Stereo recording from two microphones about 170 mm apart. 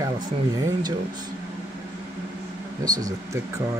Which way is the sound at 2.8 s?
20° right (ahead or behind).